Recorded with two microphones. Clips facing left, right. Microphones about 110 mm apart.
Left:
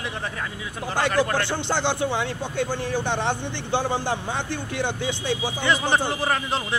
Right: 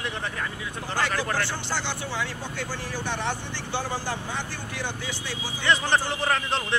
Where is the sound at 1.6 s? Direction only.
20° left (ahead or behind).